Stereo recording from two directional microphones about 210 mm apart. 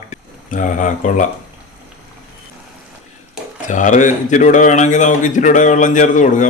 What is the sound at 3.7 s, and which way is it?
Speech, 35° left (ahead or behind).